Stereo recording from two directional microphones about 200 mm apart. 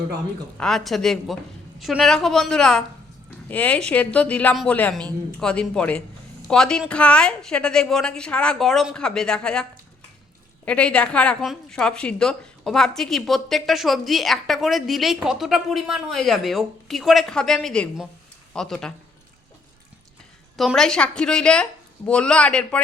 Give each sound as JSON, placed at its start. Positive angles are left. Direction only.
{"t": 0.5, "sound": "a woman's voice", "side_deg": 5}
{"t": 10.7, "sound": "a woman's voice", "side_deg": 5}
{"t": 20.6, "sound": "a woman's voice", "side_deg": 0}